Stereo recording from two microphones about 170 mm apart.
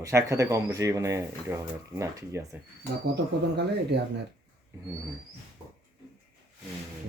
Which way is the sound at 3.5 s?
80° right.